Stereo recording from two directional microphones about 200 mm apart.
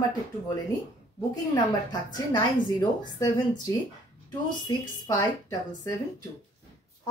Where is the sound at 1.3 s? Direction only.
20° left (ahead or behind).